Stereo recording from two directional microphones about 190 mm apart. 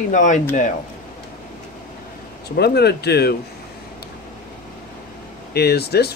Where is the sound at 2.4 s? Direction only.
55° left (ahead or behind).